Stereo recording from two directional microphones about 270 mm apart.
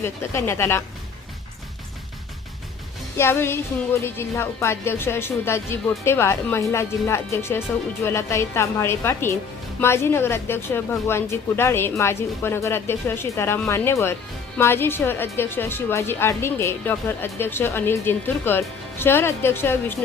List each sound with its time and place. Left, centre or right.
0.0 s a woman's voice: centre
3.2 s a woman's voice: centre